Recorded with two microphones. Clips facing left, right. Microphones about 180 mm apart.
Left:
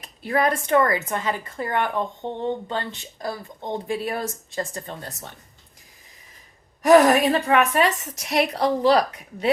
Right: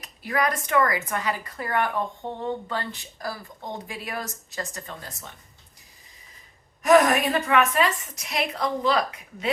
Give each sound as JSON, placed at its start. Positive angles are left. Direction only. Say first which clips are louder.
{"t": 0.0, "sound": "a woman's voice", "louder": "left 4 dB", "side_deg": 30}
{"t": 6.8, "sound": "a woman's voice", "louder": "left 4 dB", "side_deg": 35}